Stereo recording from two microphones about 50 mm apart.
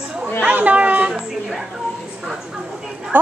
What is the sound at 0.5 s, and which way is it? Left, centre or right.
Speech, right.